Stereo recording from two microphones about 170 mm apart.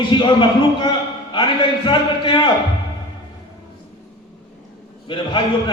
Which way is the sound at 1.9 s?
30° left (ahead or behind).